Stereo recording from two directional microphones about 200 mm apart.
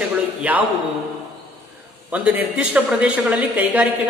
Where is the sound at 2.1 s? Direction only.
5° right (ahead or behind).